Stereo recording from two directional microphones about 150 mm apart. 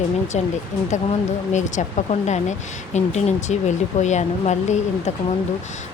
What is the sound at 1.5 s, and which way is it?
Speech, 55° left (ahead or behind).